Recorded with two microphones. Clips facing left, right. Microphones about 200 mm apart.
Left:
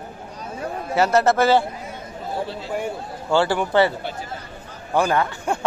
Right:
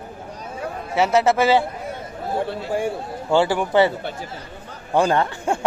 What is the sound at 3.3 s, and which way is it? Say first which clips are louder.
Speech: right 1 dB; 15° right (ahead or behind).